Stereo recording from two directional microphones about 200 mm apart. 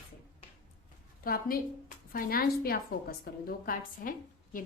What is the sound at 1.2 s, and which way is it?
A woman's voice, 45° left (ahead or behind).